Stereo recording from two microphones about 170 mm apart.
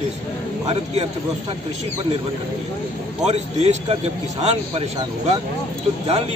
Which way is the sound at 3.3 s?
40° right (ahead or behind).